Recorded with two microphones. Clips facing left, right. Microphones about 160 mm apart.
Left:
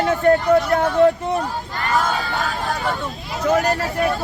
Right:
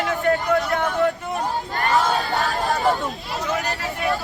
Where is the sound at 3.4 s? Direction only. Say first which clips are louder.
Left 9 dB; 40° left (ahead or behind).